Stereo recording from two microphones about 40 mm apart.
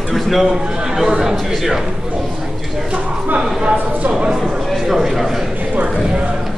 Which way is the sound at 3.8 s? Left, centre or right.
Right.